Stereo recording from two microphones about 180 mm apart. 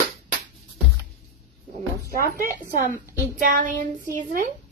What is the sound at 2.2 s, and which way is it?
Speech, 50° right (ahead or behind).